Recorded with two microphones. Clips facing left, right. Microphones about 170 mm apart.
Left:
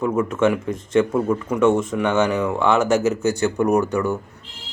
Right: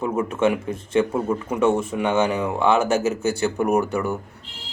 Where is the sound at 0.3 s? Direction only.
10° right (ahead or behind).